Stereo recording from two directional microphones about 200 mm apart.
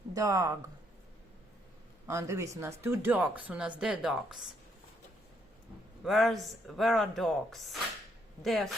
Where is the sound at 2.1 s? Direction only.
15° right (ahead or behind).